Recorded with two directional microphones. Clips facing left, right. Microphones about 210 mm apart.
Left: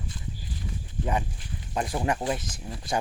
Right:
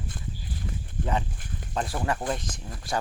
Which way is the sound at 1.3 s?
50° right (ahead or behind).